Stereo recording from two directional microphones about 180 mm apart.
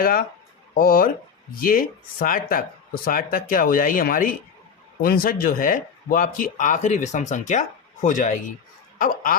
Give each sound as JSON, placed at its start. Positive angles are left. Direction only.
{"t": 0.0, "sound": "speech", "side_deg": 55}